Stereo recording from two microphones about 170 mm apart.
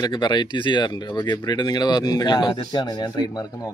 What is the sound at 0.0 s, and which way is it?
Speech, 25° left (ahead or behind).